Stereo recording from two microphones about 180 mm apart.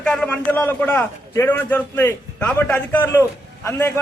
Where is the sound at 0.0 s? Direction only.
5° left (ahead or behind).